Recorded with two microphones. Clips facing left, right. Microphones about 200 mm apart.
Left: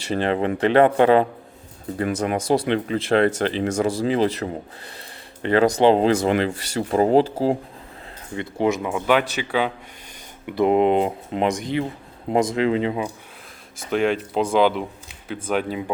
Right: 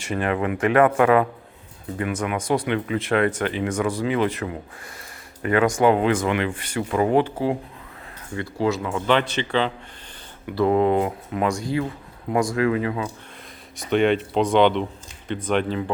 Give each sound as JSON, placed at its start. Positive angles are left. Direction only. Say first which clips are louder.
{"t": 0.1, "sound": "speech", "louder": "left 2 dB", "side_deg": 30}
{"t": 8.4, "sound": "speech", "louder": "left 2 dB", "side_deg": 20}
{"t": 10.4, "sound": "speech", "louder": "left 1 dB", "side_deg": 20}
{"t": 13.7, "sound": "speech", "louder": "right 2 dB", "side_deg": 0}